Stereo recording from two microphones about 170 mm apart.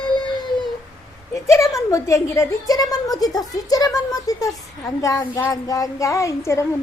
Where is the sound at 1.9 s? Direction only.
20° left (ahead or behind).